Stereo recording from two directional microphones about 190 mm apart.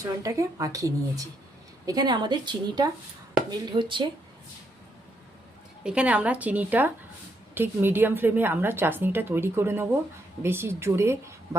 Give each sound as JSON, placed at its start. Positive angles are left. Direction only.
{"t": 0.0, "sound": "a woman's voice", "side_deg": -15}
{"t": 5.8, "sound": "a woman's voice", "side_deg": -5}